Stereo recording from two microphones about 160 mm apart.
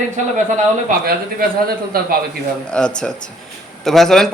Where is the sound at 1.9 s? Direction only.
65° right (ahead or behind).